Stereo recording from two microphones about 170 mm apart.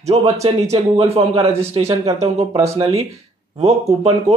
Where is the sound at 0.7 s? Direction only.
35° right (ahead or behind).